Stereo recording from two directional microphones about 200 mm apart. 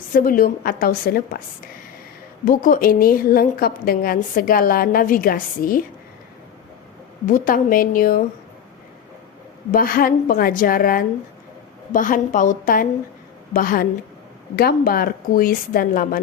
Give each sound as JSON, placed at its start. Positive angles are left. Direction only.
{"t": 0.1, "sound": "a woman's voice", "side_deg": 45}
{"t": 2.4, "sound": "a woman's voice", "side_deg": 40}
{"t": 7.3, "sound": "a woman's voice", "side_deg": 45}
{"t": 9.7, "sound": "a woman's voice", "side_deg": 45}